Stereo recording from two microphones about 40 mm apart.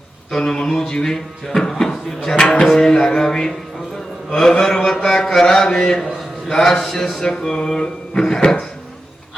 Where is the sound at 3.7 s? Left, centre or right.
Centre.